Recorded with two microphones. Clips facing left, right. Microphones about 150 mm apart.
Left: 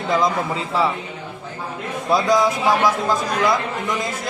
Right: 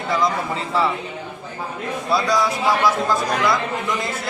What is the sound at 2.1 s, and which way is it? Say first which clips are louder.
Speech: left 3 dB; 20° left (ahead or behind).